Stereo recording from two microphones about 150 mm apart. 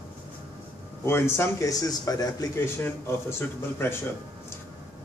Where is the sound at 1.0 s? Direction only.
15° left (ahead or behind).